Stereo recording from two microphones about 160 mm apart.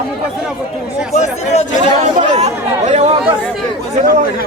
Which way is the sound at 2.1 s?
45° right (ahead or behind).